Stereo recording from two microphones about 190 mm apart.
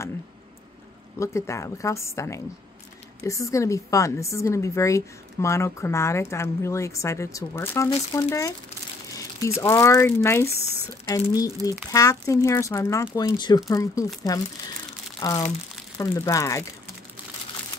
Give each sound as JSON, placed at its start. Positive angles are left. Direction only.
{"t": 1.2, "sound": "a woman's voice", "side_deg": 15}
{"t": 9.6, "sound": "a woman's voice", "side_deg": 15}